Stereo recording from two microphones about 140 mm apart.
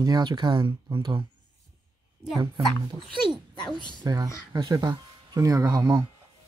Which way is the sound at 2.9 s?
35° right (ahead or behind).